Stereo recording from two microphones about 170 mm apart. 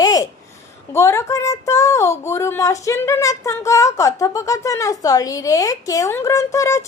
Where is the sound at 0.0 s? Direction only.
20° left (ahead or behind).